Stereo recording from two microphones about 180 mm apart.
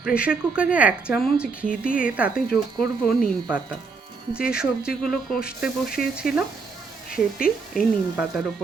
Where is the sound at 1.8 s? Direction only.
50° left (ahead or behind).